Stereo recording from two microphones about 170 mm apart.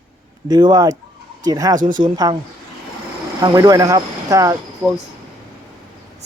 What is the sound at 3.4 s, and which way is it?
Speech, 20° right (ahead or behind).